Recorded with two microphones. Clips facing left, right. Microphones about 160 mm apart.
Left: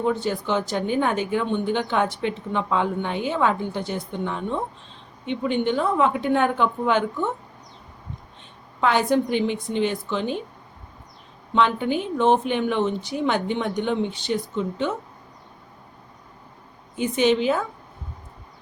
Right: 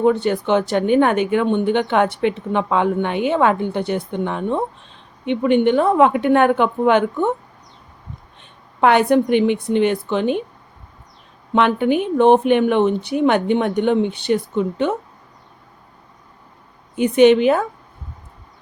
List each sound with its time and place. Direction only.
0.0 s speech: 65° right (ahead or behind)
8.8 s speech: 60° right (ahead or behind)
11.5 s speech: 60° right (ahead or behind)
17.0 s speech: 60° right (ahead or behind)